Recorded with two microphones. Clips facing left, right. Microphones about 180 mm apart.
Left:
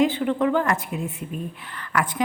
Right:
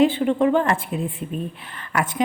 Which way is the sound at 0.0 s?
25° right (ahead or behind).